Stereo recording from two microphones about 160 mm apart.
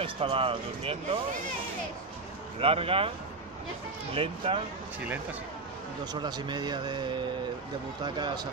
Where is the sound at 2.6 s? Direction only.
35° right (ahead or behind).